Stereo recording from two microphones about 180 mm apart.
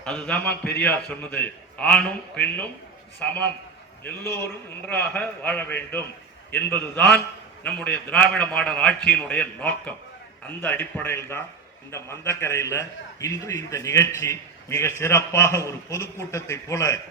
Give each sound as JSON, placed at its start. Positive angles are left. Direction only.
{"t": 0.0, "sound": "a man's voice", "side_deg": 5}
{"t": 4.9, "sound": "a man's voice", "side_deg": 10}